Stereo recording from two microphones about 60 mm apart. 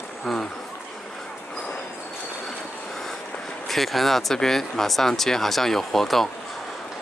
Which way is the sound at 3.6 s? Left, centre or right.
Centre.